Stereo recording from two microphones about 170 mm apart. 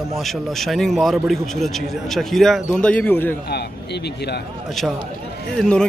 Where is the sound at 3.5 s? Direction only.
75° left (ahead or behind).